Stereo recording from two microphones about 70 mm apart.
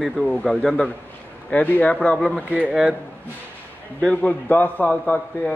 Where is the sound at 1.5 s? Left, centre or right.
Left.